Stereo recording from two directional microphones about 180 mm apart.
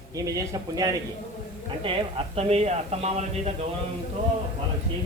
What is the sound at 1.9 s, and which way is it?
Speech, 30° right (ahead or behind).